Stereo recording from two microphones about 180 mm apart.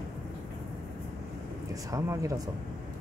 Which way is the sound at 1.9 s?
15° right (ahead or behind).